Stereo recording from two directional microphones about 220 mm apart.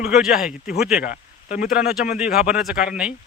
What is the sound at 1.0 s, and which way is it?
Speech, 35° left (ahead or behind).